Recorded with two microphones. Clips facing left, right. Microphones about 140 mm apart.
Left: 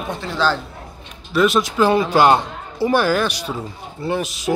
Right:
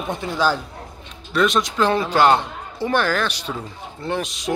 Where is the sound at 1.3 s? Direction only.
5° left (ahead or behind).